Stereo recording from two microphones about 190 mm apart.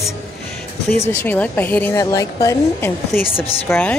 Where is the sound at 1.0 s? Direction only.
10° left (ahead or behind).